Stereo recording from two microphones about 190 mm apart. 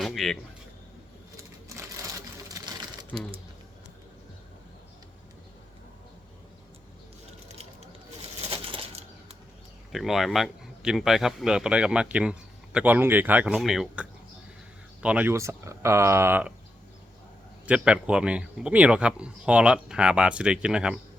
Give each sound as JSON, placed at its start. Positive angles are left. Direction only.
{"t": 0.0, "sound": "a sound", "side_deg": 0}
{"t": 1.7, "sound": "sewing machine", "side_deg": -15}
{"t": 7.4, "sound": "ratchet", "side_deg": -35}
{"t": 8.4, "sound": "a sound", "side_deg": -30}
{"t": 9.9, "sound": "speech", "side_deg": 0}
{"t": 17.7, "sound": "speech", "side_deg": -5}